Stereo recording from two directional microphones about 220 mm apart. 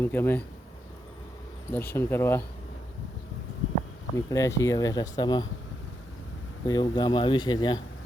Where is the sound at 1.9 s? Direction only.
10° left (ahead or behind).